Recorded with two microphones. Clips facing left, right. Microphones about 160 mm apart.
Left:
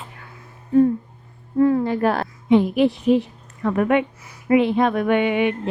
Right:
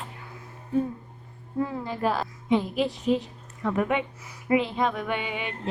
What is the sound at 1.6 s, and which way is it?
A woman's voice, 60° left (ahead or behind).